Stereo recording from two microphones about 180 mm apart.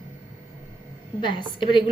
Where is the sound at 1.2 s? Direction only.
25° left (ahead or behind).